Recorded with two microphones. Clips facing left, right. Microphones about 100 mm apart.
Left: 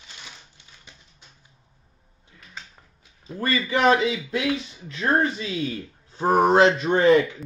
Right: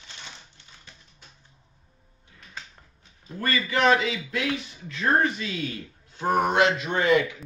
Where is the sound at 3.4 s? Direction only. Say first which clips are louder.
Left 2 dB; 25° left (ahead or behind).